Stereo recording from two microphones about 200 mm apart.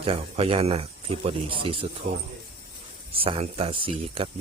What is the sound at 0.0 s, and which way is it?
Speech, 30° right (ahead or behind).